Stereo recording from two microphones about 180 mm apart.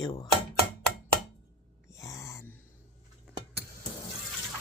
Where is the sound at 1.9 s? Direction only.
20° left (ahead or behind).